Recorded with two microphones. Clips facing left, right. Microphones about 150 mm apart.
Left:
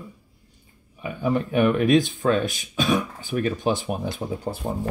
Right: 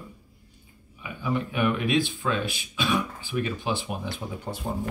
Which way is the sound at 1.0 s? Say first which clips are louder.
Left 5 dB; 45° left (ahead or behind).